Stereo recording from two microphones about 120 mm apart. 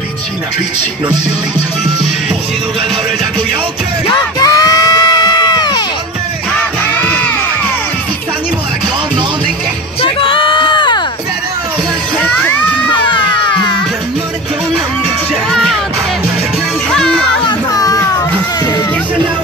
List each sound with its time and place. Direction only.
4.1 s crowd: 30° left (ahead or behind)
7.0 s music: 10° left (ahead or behind)
10.0 s a sound: 45° left (ahead or behind)
12.2 s music: 15° left (ahead or behind)
15.5 s music: centre (ahead or behind)
16.9 s music: 5° left (ahead or behind)
17.4 s child singing: 35° left (ahead or behind)